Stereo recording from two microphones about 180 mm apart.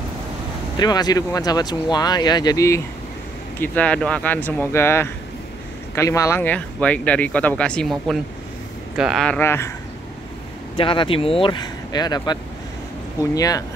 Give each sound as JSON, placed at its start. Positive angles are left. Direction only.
{"t": 0.7, "sound": "speech", "side_deg": 20}
{"t": 10.8, "sound": "speech", "side_deg": 30}